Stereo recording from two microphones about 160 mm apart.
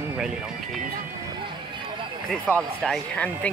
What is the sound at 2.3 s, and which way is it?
Speech, 5° left (ahead or behind).